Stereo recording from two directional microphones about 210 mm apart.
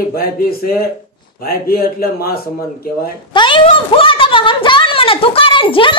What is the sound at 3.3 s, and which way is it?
Speech, 25° left (ahead or behind).